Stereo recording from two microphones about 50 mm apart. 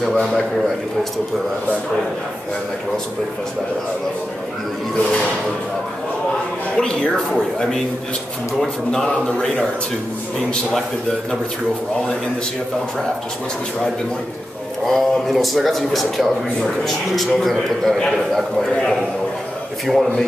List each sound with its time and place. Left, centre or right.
0.0 s speech: centre
6.8 s a man's voice: centre
14.9 s a man's voice: centre
19.9 s speech: centre